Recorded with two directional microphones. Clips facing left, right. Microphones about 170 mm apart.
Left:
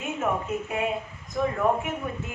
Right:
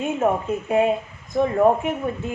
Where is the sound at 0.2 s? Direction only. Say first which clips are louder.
Right 4 dB; 35° right (ahead or behind).